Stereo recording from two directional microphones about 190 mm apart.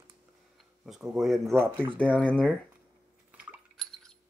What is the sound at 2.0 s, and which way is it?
Speech, 5° left (ahead or behind).